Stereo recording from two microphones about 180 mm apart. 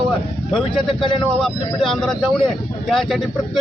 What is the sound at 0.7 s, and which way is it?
Speech, 30° left (ahead or behind).